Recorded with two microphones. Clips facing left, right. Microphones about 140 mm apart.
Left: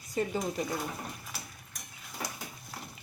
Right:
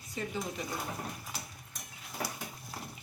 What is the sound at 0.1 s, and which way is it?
Speech, 40° left (ahead or behind).